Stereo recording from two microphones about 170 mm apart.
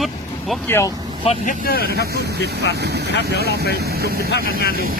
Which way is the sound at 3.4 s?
70° right (ahead or behind).